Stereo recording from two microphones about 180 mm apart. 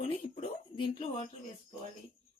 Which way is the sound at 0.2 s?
35° left (ahead or behind).